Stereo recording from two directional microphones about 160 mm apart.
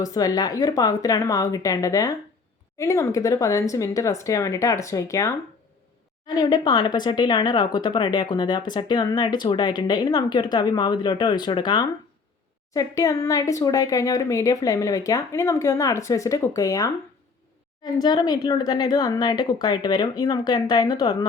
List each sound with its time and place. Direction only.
0.0 s speech: 20° left (ahead or behind)
17.9 s speech: 25° left (ahead or behind)